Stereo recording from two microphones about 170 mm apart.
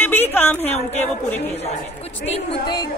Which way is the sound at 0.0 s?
10° left (ahead or behind).